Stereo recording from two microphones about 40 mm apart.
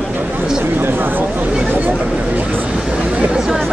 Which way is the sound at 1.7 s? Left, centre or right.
Right.